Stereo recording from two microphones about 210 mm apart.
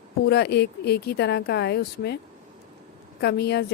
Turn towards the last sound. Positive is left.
turn(degrees=50)  # may be behind; listen again after turning